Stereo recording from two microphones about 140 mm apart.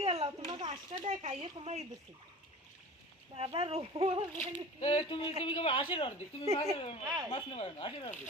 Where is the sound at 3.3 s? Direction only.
40° right (ahead or behind).